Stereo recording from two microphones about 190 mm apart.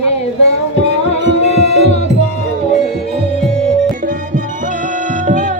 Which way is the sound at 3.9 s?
45° right (ahead or behind).